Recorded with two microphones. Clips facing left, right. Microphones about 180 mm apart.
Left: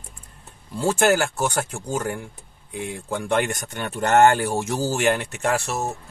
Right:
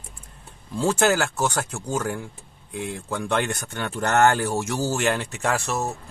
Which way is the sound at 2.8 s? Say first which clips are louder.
Left 2 dB; 10° left (ahead or behind).